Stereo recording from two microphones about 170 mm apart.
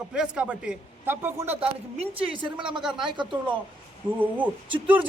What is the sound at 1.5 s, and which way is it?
Speech, 35° right (ahead or behind).